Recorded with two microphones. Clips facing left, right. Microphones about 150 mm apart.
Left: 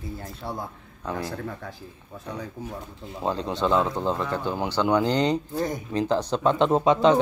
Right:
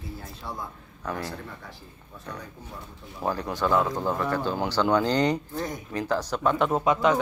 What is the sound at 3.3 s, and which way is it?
Speech, 20° left (ahead or behind).